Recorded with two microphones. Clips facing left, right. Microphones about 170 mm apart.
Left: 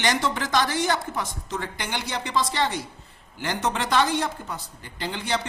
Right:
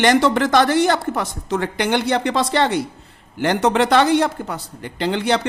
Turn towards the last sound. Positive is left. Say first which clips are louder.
# right 9 dB
turn(degrees=-70)  # may be behind; listen again after turning